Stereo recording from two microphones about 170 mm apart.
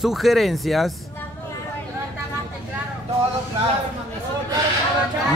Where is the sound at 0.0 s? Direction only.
Centre (ahead or behind).